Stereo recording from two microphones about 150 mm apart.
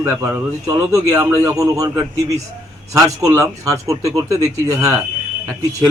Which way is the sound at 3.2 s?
20° right (ahead or behind).